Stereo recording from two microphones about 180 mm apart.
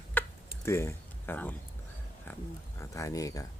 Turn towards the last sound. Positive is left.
turn(degrees=20)  # may be behind; listen again after turning